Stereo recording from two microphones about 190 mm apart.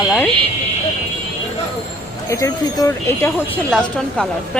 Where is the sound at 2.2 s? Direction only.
15° left (ahead or behind).